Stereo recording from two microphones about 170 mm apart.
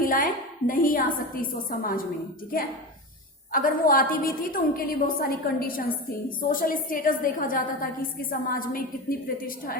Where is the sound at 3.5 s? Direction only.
55° left (ahead or behind).